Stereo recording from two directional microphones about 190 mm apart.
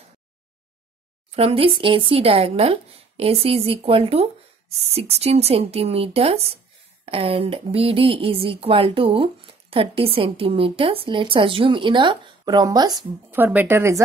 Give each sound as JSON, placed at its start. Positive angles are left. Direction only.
{"t": 1.3, "sound": "speech", "side_deg": -30}